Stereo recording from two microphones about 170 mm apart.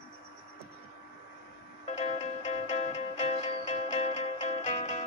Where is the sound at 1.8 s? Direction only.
40° left (ahead or behind).